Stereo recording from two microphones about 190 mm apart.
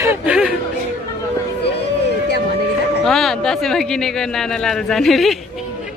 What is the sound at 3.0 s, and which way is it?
Speech, centre (ahead or behind).